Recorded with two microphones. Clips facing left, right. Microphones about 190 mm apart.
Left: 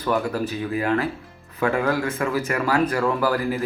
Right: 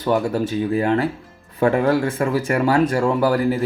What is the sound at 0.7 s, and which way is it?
Speech, 30° right (ahead or behind).